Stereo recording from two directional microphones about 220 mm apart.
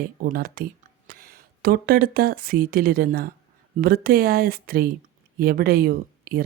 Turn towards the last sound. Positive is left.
turn(degrees=-40)  # may be behind; listen again after turning